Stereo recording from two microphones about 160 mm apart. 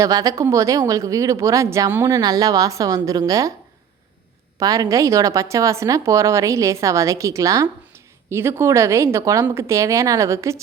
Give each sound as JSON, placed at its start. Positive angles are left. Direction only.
{"t": 0.0, "sound": "speech", "side_deg": -20}
{"t": 4.6, "sound": "a woman's voice", "side_deg": -20}